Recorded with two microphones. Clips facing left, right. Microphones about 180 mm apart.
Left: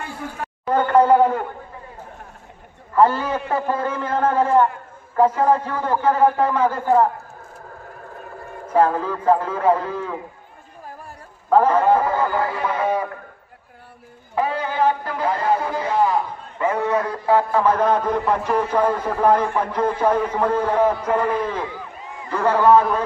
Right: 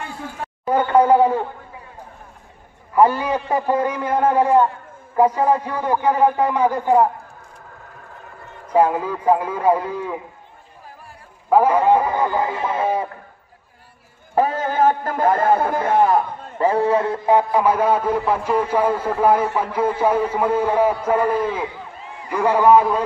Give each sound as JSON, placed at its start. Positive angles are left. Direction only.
{"t": 0.7, "sound": "a man's voice", "side_deg": -10}
{"t": 2.9, "sound": "a man's voice", "side_deg": -15}
{"t": 8.7, "sound": "a man's voice", "side_deg": -10}
{"t": 11.4, "sound": "a man's voice", "side_deg": -10}
{"t": 14.3, "sound": "a man's voice", "side_deg": -45}
{"t": 16.5, "sound": "a man's voice", "side_deg": -35}